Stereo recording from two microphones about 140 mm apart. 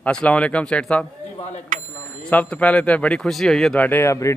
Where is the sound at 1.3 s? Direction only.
55° left (ahead or behind).